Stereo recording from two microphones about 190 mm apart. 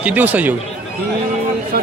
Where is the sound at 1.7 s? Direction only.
55° right (ahead or behind).